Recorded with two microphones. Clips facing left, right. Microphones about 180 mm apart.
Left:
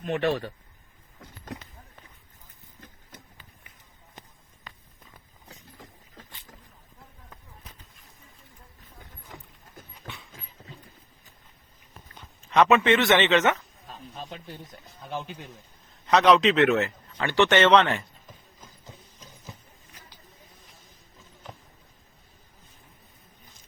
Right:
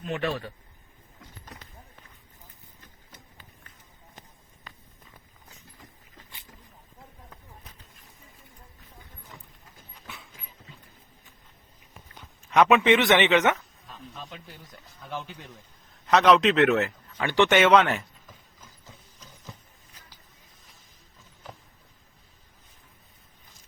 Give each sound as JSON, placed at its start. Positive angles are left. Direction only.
{"t": 0.0, "sound": "speech", "side_deg": 40}
{"t": 10.0, "sound": "dog", "side_deg": 45}
{"t": 12.5, "sound": "speech", "side_deg": -10}
{"t": 13.8, "sound": "speech", "side_deg": 35}
{"t": 15.1, "sound": "speech", "side_deg": 20}
{"t": 16.0, "sound": "a man's voice", "side_deg": 0}
{"t": 17.2, "sound": "speech", "side_deg": -15}